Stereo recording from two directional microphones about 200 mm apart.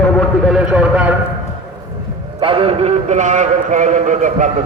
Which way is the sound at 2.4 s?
25° right (ahead or behind).